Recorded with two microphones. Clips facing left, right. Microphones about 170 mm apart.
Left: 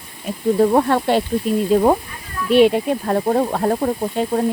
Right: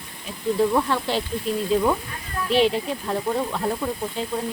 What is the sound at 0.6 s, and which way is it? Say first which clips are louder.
Speech: left 6 dB; 50° left (ahead or behind).